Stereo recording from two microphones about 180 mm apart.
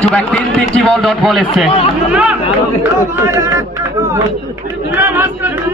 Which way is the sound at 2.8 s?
15° right (ahead or behind).